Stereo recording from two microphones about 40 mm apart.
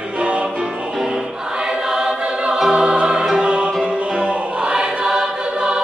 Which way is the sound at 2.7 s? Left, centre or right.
Right.